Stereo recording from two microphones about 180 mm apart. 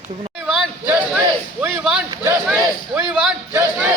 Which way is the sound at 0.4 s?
5° right (ahead or behind).